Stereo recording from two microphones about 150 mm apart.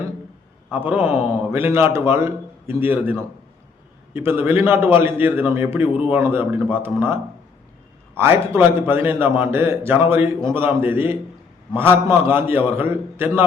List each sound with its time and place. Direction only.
0.7 s a man's voice: 10° right (ahead or behind)